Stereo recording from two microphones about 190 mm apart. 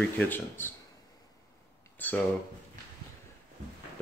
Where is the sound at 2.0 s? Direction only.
10° left (ahead or behind).